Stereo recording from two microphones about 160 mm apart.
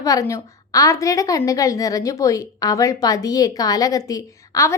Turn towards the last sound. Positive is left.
turn(degrees=20)  # may be behind; listen again after turning